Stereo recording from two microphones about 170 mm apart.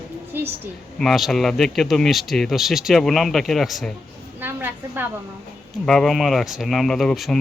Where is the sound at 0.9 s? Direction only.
Centre (ahead or behind).